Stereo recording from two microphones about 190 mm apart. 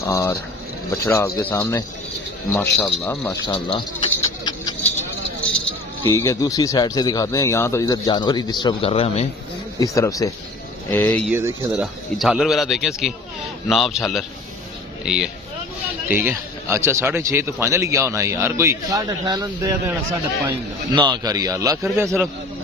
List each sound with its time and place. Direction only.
0.0 s speech: 15° left (ahead or behind)
3.5 s speech: 25° left (ahead or behind)
6.0 s speech: 15° left (ahead or behind); by 9.3 s 30° left (ahead or behind)
9.8 s speech: 15° left (ahead or behind)
11.2 s a man's voice: 10° right (ahead or behind)
11.8 s a man's voice: centre (ahead or behind)